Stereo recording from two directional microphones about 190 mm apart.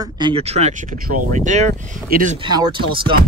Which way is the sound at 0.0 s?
20° right (ahead or behind).